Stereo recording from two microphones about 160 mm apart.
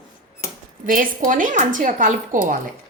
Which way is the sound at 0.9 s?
60° right (ahead or behind).